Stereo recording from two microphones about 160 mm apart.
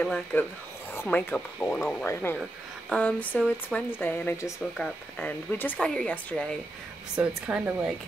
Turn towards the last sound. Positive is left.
turn(degrees=-5)  # may be behind; listen again after turning